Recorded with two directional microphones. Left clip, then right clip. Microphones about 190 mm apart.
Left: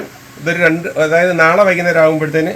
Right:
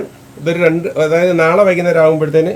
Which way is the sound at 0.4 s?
45° right (ahead or behind).